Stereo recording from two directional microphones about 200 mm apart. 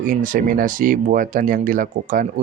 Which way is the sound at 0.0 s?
40° right (ahead or behind).